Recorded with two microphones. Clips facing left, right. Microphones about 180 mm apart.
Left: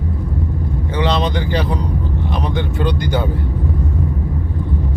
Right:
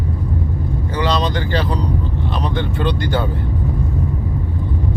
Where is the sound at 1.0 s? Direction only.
20° left (ahead or behind).